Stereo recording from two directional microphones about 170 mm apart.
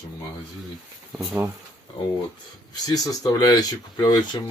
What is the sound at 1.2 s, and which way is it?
Speech, 10° right (ahead or behind).